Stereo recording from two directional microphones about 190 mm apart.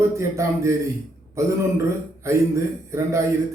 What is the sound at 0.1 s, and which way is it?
Speech, 15° right (ahead or behind).